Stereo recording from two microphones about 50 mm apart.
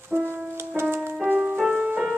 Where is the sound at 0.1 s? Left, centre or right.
Right.